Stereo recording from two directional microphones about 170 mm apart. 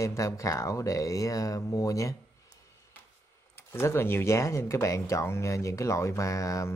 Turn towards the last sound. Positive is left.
turn(degrees=20)  # may be behind; listen again after turning